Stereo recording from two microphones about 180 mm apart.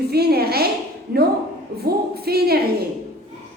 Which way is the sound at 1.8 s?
60° right (ahead or behind).